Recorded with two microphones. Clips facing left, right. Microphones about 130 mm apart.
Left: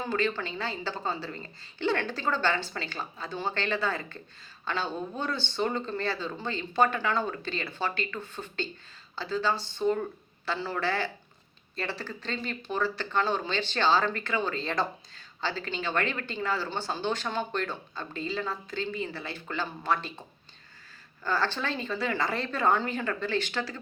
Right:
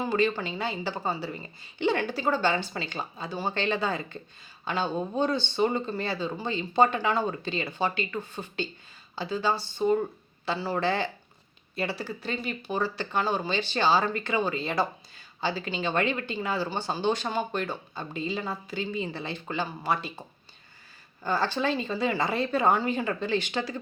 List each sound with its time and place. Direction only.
0.0 s speech: 15° right (ahead or behind)
21.2 s speech: 15° right (ahead or behind)